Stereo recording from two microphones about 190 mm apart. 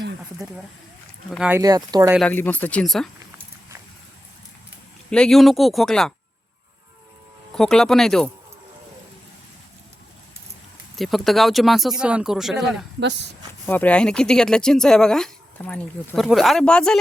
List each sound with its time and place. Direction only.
0.4 s speech: 15° right (ahead or behind)
1.3 s speech: 5° right (ahead or behind)
1.5 s speech: 20° right (ahead or behind)
2.1 s speech: 5° left (ahead or behind)
5.1 s speech: centre (ahead or behind)
7.5 s speech: 5° left (ahead or behind)
10.9 s speech: centre (ahead or behind)
13.0 s speech: 65° right (ahead or behind)
13.7 s speech: 10° left (ahead or behind)